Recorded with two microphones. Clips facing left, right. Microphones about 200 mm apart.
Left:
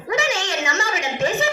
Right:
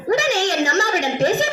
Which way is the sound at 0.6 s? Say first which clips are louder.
Right 5 dB; 35° right (ahead or behind).